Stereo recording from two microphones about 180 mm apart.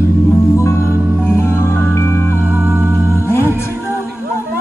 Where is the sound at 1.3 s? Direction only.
15° left (ahead or behind).